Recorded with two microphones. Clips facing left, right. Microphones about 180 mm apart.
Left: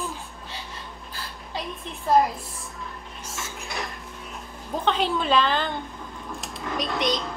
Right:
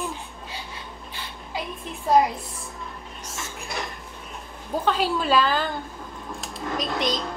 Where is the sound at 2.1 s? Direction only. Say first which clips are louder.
Right 1 dB; centre (ahead or behind).